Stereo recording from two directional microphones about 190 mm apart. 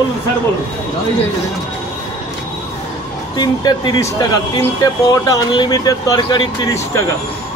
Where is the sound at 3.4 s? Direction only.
20° left (ahead or behind).